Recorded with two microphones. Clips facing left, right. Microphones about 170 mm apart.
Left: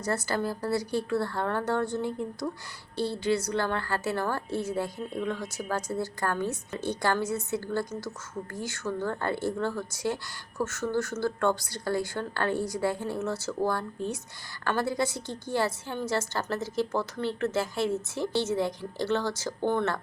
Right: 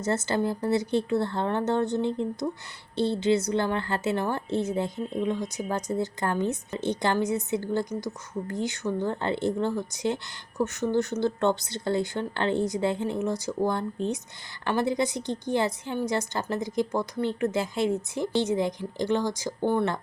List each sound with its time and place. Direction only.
0.0 s a woman's voice: 20° right (ahead or behind)